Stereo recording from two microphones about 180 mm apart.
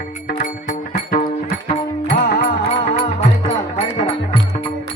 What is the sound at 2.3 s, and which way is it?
Music, 45° left (ahead or behind).